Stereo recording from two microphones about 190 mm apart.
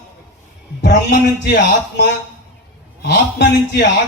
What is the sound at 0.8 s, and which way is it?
Speech, 60° left (ahead or behind).